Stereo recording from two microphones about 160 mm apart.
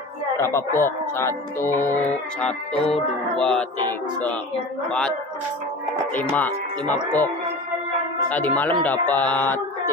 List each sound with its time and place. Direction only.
0.4 s speech: 20° left (ahead or behind)
2.9 s music: 5° left (ahead or behind)
6.3 s speech: 10° left (ahead or behind)
8.3 s speech: 10° left (ahead or behind)